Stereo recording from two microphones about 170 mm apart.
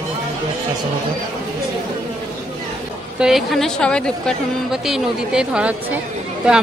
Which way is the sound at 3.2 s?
Centre (ahead or behind).